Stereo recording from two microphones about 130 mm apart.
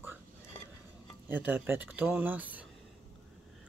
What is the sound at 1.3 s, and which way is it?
Speech, 15° right (ahead or behind).